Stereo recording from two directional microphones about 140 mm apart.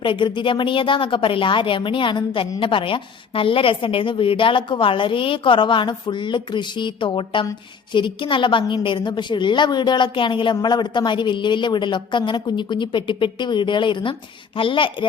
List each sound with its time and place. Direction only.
0.0 s a woman's voice: 35° left (ahead or behind)